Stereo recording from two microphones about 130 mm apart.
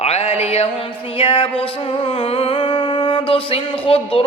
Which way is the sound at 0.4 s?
50° left (ahead or behind).